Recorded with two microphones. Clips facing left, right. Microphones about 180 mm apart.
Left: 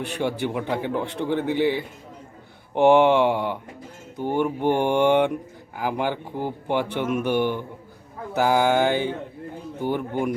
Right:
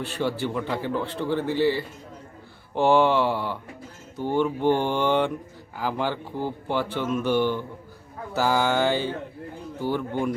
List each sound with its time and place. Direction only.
0.2 s speech: 20° left (ahead or behind)